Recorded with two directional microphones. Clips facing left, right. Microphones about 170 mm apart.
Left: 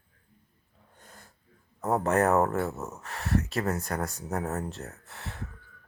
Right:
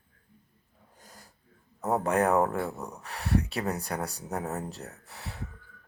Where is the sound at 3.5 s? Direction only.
15° right (ahead or behind).